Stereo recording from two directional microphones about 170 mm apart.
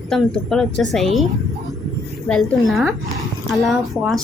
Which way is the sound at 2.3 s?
5° left (ahead or behind).